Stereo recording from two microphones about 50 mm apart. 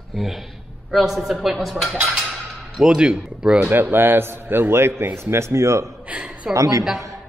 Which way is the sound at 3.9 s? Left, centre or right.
Right.